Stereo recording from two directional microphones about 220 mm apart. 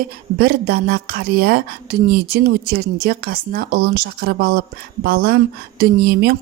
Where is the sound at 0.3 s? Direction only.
45° right (ahead or behind).